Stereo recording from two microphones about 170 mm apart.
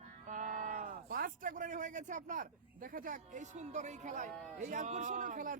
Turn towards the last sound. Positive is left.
turn(degrees=-50)  # may be behind; listen again after turning